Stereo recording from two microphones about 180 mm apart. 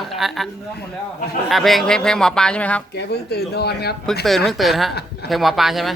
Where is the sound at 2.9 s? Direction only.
65° left (ahead or behind).